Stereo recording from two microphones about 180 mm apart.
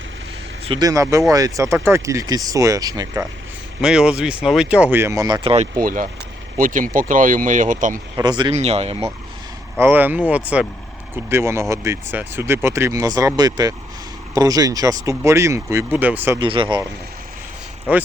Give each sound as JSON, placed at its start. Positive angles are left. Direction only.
{"t": 0.6, "sound": "speech", "side_deg": -25}
{"t": 3.8, "sound": "speech", "side_deg": -5}
{"t": 5.8, "sound": "speech", "side_deg": -50}
{"t": 8.1, "sound": "speech", "side_deg": -25}
{"t": 8.5, "sound": "speech", "side_deg": -35}
{"t": 9.7, "sound": "speech", "side_deg": -10}
{"t": 16.4, "sound": "speech", "side_deg": -30}